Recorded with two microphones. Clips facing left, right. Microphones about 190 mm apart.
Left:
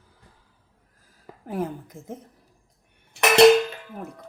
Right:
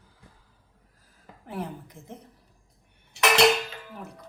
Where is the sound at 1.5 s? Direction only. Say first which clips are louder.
Left 6 dB; 45° left (ahead or behind).